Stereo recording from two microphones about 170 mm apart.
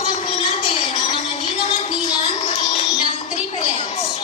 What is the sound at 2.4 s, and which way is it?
Music, 45° left (ahead or behind).